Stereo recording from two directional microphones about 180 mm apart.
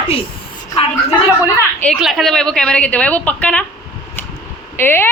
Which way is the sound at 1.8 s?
Centre (ahead or behind).